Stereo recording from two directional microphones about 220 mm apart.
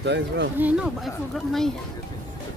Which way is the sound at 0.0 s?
50° right (ahead or behind).